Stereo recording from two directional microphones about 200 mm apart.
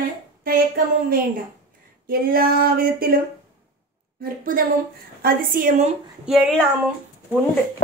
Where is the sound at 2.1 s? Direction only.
50° right (ahead or behind).